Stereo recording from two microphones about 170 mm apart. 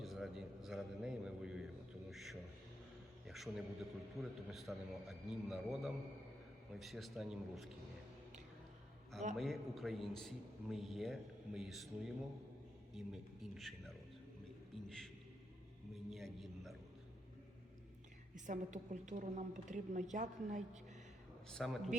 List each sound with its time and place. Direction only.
0.0 s a sound: centre (ahead or behind)
3.2 s a man's voice: centre (ahead or behind)
9.3 s a man's voice: centre (ahead or behind)
16.0 s a sound: centre (ahead or behind)
18.3 s a woman's voice: 45° right (ahead or behind)
21.5 s a man's voice: centre (ahead or behind)